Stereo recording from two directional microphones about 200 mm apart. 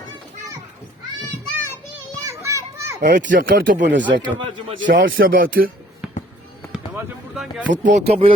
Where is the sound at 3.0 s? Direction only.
40° right (ahead or behind).